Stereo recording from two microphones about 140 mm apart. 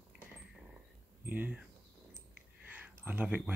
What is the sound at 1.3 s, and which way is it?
Speech, 10° right (ahead or behind).